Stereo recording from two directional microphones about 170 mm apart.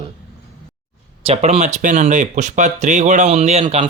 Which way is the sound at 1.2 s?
35° right (ahead or behind).